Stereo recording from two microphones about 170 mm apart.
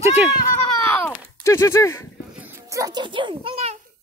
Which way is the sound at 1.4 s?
15° left (ahead or behind).